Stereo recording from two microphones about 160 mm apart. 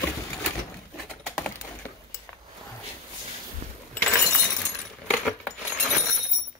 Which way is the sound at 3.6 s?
40° right (ahead or behind).